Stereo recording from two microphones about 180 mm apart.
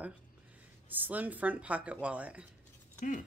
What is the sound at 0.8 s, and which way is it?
Speech, 10° right (ahead or behind).